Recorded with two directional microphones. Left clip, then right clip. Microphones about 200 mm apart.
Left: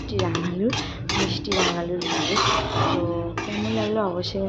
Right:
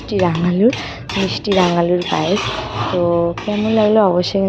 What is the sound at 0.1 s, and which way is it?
Speech, 40° right (ahead or behind).